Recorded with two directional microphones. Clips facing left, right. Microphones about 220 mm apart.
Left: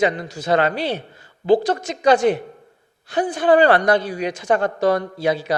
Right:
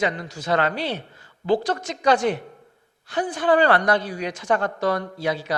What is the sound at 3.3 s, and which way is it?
Speech, 20° left (ahead or behind).